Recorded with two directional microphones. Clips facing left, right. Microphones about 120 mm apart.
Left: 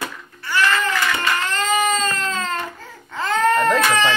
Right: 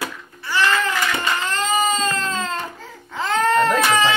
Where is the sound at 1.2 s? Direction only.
15° right (ahead or behind).